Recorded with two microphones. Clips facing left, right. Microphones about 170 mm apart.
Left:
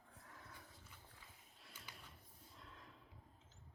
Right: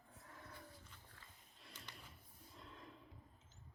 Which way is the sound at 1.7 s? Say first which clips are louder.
Right 2 dB; 10° left (ahead or behind).